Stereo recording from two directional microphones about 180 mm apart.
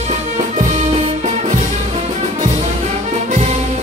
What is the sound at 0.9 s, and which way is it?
Music, 40° right (ahead or behind).